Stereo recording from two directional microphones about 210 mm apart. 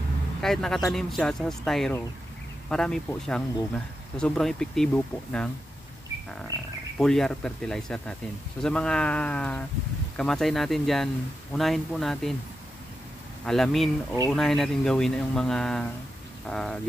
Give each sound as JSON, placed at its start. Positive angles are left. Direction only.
{"t": 0.4, "sound": "speech", "side_deg": 0}
{"t": 6.5, "sound": "speech", "side_deg": -15}
{"t": 7.0, "sound": "speech", "side_deg": 0}
{"t": 13.5, "sound": "speech", "side_deg": 0}